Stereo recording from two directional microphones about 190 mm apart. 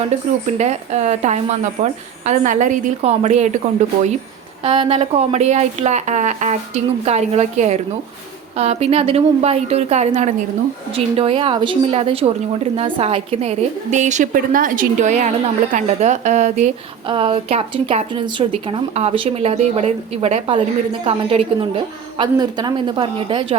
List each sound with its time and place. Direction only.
0.1 s a woman's voice: 35° right (ahead or behind)
4.6 s a woman's voice: 30° right (ahead or behind)
17.1 s a woman's voice: 30° right (ahead or behind)